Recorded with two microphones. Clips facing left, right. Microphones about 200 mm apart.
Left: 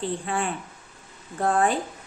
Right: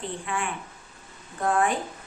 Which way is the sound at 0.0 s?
35° left (ahead or behind).